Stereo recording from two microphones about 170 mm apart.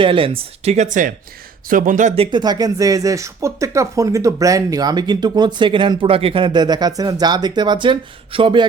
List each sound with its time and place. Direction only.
0.0 s speech: 30° right (ahead or behind); by 2.1 s 50° right (ahead or behind)
2.1 s speech: 30° right (ahead or behind)